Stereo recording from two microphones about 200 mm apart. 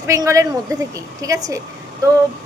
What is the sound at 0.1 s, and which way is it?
A woman's voice, 15° right (ahead or behind).